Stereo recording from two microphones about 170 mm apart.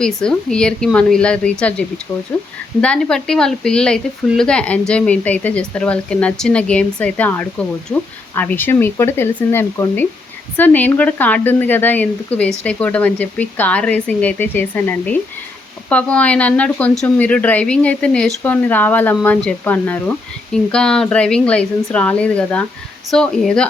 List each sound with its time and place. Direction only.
0.0 s a woman's voice: 5° left (ahead or behind)
2.8 s a woman's voice: 5° left (ahead or behind)